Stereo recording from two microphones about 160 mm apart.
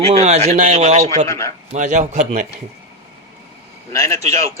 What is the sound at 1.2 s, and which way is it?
Speech, 20° left (ahead or behind).